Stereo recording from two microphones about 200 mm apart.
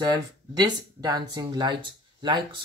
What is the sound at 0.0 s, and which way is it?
Speech, 20° right (ahead or behind).